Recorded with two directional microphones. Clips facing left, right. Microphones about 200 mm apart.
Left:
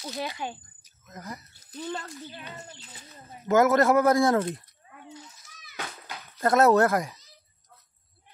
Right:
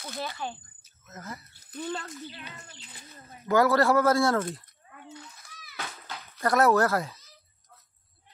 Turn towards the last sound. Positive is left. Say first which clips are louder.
# left 3 dB
turn(degrees=15)  # may be behind; listen again after turning